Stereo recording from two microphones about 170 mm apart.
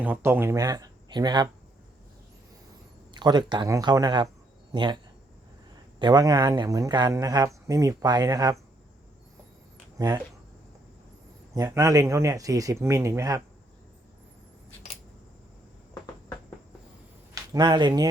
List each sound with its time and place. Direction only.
0.0 s speech: 10° right (ahead or behind)
3.2 s speech: 25° right (ahead or behind)
6.0 s speech: 25° right (ahead or behind)
11.5 s speech: 20° right (ahead or behind)
17.3 s speech: 25° right (ahead or behind)